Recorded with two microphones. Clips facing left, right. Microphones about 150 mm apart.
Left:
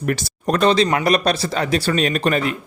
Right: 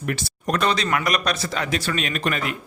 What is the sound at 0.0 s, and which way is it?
Speech, 45° left (ahead or behind).